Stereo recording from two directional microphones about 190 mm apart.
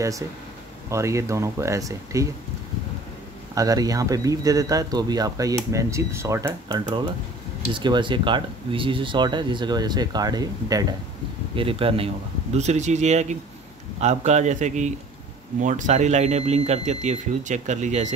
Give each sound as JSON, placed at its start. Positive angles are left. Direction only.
{"t": 0.8, "sound": "speech", "side_deg": -15}
{"t": 3.5, "sound": "speech", "side_deg": -20}